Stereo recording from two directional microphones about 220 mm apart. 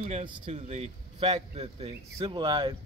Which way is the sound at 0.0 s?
30° right (ahead or behind).